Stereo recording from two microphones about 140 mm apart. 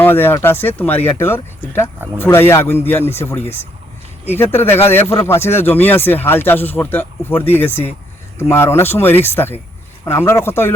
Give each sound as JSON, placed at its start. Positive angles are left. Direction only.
{"t": 0.0, "sound": "speech", "side_deg": 15}